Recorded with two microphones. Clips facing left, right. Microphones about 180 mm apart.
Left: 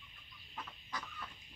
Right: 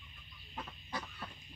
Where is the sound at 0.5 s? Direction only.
35° right (ahead or behind).